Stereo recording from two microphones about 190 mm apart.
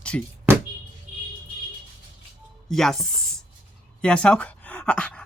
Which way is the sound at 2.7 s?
Centre (ahead or behind).